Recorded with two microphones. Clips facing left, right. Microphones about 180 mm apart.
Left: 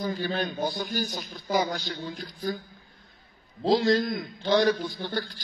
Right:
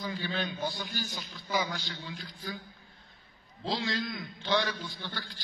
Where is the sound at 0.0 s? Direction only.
45° left (ahead or behind).